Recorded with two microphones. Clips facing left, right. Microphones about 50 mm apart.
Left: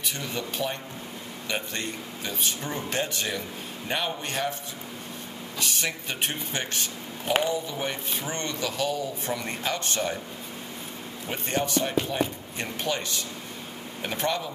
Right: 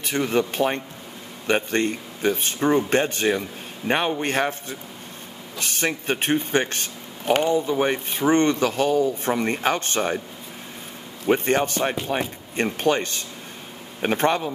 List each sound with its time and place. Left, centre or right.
0.0 s speech: right
5.6 s speech: right
11.2 s speech: right